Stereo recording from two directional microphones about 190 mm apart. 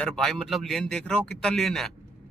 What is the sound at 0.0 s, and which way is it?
Speech, 5° left (ahead or behind).